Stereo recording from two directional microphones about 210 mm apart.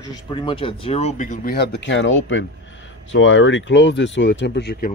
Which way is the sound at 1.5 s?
55° left (ahead or behind).